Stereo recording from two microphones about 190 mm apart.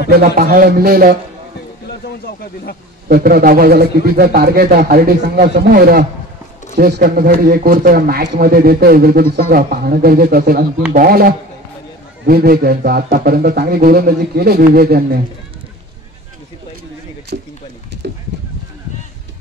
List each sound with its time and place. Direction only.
0.1 s speech: 50° right (ahead or behind)
3.1 s a man's voice: 50° right (ahead or behind)
17.3 s a sound: 55° right (ahead or behind)